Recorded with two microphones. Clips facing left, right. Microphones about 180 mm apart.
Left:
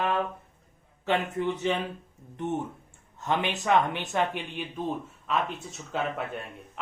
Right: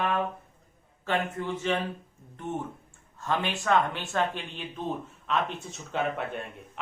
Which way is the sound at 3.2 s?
20° left (ahead or behind).